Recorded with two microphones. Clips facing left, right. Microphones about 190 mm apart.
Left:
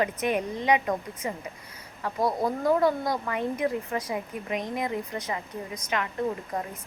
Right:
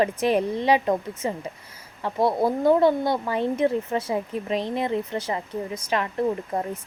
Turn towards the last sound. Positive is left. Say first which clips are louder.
# right 5 dB
turn(degrees=-25)  # may be behind; listen again after turning